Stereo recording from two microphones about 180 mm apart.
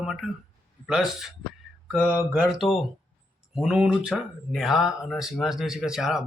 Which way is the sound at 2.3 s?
5° right (ahead or behind).